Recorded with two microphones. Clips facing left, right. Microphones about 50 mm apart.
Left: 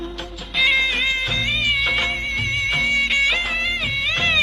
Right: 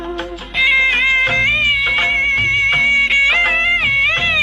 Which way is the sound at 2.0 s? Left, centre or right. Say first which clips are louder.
Right 8 dB; right.